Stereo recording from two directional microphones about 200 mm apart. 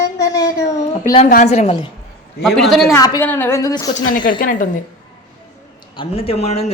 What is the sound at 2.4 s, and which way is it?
Speech, centre (ahead or behind).